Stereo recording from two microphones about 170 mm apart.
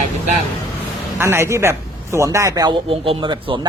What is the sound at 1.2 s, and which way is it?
Speech, 15° right (ahead or behind).